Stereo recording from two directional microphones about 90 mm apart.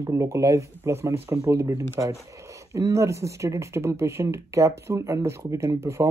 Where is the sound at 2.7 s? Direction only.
35° right (ahead or behind).